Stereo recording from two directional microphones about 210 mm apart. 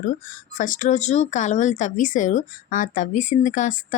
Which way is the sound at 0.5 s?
40° left (ahead or behind).